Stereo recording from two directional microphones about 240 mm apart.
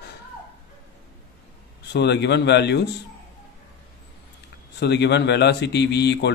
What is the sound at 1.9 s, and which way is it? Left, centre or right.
Speech, left.